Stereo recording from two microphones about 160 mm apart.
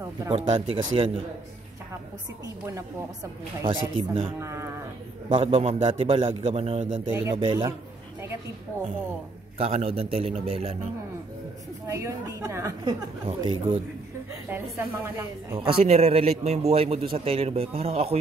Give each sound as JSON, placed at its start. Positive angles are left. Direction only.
{"t": 0.3, "sound": "a man's voice", "side_deg": -30}
{"t": 2.4, "sound": "a woman's voice", "side_deg": -20}
{"t": 3.6, "sound": "a man's voice", "side_deg": -35}
{"t": 4.4, "sound": "a woman's voice", "side_deg": -15}
{"t": 5.3, "sound": "a man's voice", "side_deg": -35}
{"t": 7.1, "sound": "a woman's voice", "side_deg": -10}
{"t": 7.3, "sound": "a man's voice", "side_deg": -30}
{"t": 9.6, "sound": "a man's voice", "side_deg": -40}
{"t": 11.9, "sound": "a woman's voice", "side_deg": -20}
{"t": 13.3, "sound": "a man's voice", "side_deg": -35}
{"t": 14.5, "sound": "a woman's voice", "side_deg": -15}
{"t": 15.8, "sound": "a man's voice", "side_deg": -40}